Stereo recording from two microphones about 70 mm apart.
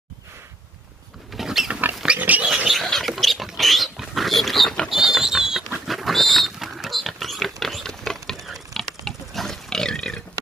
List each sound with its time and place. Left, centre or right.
1.3 s mechanisms: centre
1.7 s rodents: right
2.0 s pig: right
2.4 s roaring cats: centre
2.8 s pig: centre
5.9 s rodents: centre